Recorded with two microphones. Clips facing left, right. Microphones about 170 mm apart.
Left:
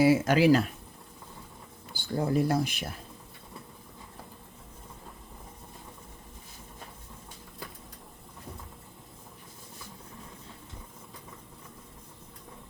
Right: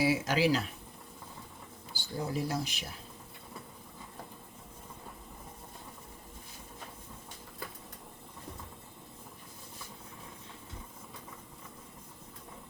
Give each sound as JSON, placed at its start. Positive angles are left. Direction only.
{"t": 0.0, "sound": "speech", "side_deg": 50}
{"t": 1.9, "sound": "speech", "side_deg": 55}